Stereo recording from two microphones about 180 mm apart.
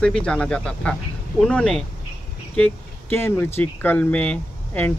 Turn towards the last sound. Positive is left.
turn(degrees=10)  # may be behind; listen again after turning